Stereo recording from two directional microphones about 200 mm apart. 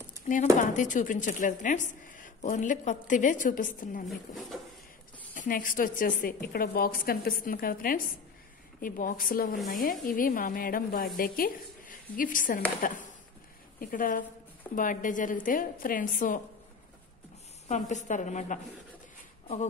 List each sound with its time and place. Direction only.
0.3 s speech: 35° left (ahead or behind)
4.1 s speech: centre (ahead or behind)
5.3 s a woman's voice: 45° left (ahead or behind)
13.7 s a woman's voice: 45° left (ahead or behind)
17.6 s speech: 35° left (ahead or behind)